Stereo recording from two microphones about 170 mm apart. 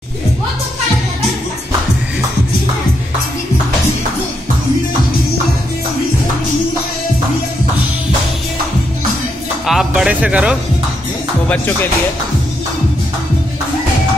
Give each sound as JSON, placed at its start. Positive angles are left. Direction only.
{"t": 9.7, "sound": "music", "side_deg": -5}
{"t": 11.4, "sound": "speech", "side_deg": 10}